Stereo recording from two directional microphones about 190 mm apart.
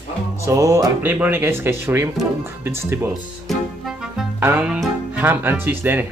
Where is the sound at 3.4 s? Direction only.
Centre (ahead or behind).